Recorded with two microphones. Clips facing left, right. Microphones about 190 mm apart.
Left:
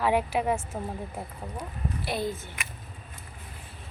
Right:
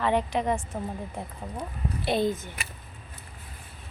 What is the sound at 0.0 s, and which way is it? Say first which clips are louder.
Speech: even; 10° left (ahead or behind).